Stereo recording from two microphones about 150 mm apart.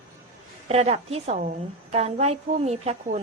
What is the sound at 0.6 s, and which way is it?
A woman's voice, 45° right (ahead or behind).